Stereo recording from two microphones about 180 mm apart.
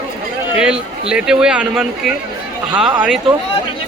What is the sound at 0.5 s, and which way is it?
Speech, 5° right (ahead or behind).